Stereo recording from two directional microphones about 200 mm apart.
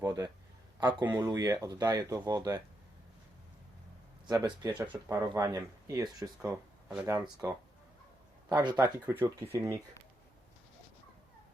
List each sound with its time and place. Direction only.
0.0 s a sound: 15° right (ahead or behind)
1.0 s speech: 10° right (ahead or behind)
4.3 s speech: 15° right (ahead or behind)